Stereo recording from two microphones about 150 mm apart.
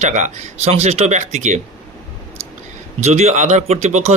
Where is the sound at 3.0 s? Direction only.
45° right (ahead or behind).